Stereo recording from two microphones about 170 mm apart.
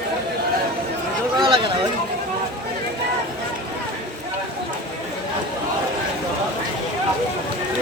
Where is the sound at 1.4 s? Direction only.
30° right (ahead or behind).